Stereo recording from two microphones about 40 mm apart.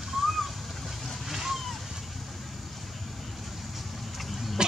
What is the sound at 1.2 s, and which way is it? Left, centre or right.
Slosh, centre.